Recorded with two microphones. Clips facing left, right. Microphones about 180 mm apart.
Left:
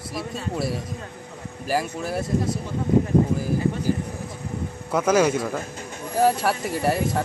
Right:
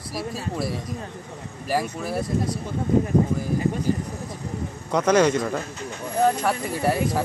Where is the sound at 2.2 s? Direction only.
25° left (ahead or behind).